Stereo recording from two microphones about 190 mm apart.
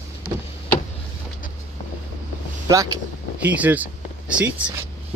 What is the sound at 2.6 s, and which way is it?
Speech, 15° right (ahead or behind).